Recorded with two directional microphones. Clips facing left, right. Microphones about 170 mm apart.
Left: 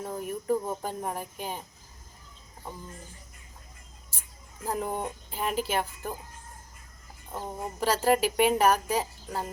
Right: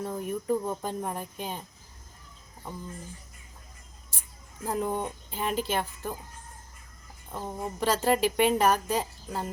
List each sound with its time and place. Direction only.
0.2 s speech: 10° left (ahead or behind)
4.6 s speech: 10° left (ahead or behind)
7.3 s speech: 15° left (ahead or behind)